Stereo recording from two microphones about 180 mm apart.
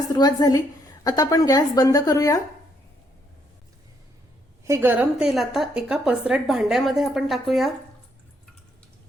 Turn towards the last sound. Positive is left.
turn(degrees=0)  # may be behind; listen again after turning